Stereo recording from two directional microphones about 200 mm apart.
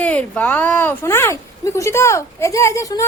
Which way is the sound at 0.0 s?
5° left (ahead or behind).